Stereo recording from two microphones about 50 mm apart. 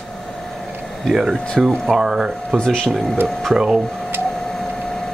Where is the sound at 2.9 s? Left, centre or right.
Centre.